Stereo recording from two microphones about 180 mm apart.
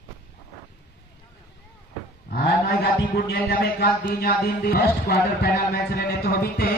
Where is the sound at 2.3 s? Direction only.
60° left (ahead or behind).